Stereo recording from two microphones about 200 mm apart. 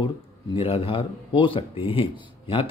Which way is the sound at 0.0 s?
25° left (ahead or behind).